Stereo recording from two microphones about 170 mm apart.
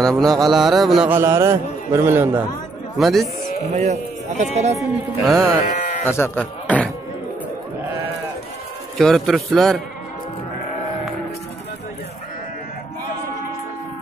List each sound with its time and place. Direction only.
0.0 s speech: centre (ahead or behind); by 2.3 s 15° right (ahead or behind)
3.0 s speech: centre (ahead or behind)
3.6 s a man's voice: 40° right (ahead or behind)
4.7 s speech: centre (ahead or behind)
6.0 s speech: 15° left (ahead or behind)
8.9 s speech: centre (ahead or behind)